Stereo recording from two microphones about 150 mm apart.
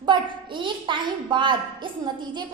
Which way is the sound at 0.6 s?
35° right (ahead or behind).